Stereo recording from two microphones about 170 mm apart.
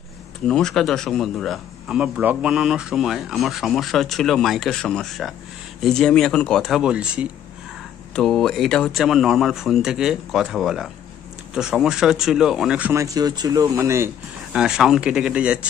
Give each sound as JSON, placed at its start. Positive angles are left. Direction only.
{"t": 0.5, "sound": "speech", "side_deg": 5}
{"t": 13.0, "sound": "speech", "side_deg": -20}
{"t": 14.5, "sound": "speech", "side_deg": -5}